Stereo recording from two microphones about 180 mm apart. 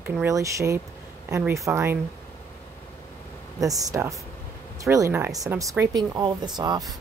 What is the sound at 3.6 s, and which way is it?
Speech, 20° right (ahead or behind).